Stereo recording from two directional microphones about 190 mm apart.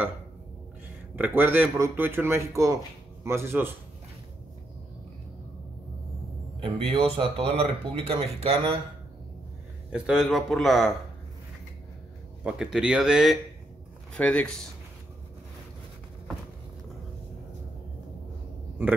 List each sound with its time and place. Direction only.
1.1 s speech: 10° right (ahead or behind)
6.6 s speech: 30° right (ahead or behind)
9.9 s a man's voice: 5° right (ahead or behind)
12.4 s a man's voice: 5° right (ahead or behind)